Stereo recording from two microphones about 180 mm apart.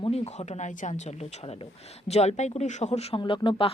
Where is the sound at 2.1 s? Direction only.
35° left (ahead or behind).